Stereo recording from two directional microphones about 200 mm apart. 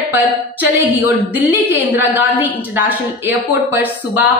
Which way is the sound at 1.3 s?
10° right (ahead or behind).